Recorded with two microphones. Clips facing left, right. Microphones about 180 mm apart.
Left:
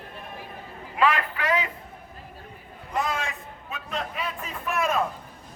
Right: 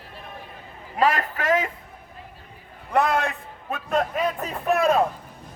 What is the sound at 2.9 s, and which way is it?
A man's voice, 65° right (ahead or behind).